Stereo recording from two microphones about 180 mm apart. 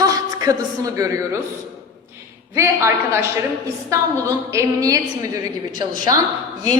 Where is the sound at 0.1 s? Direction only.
20° right (ahead or behind).